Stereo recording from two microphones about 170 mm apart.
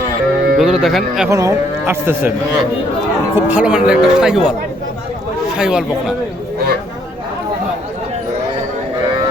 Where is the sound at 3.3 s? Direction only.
10° right (ahead or behind).